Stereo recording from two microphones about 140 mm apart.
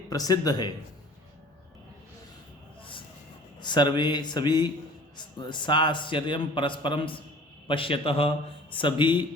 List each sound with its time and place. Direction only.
0.1 s speech: 25° left (ahead or behind)
3.6 s a man's voice: 30° left (ahead or behind)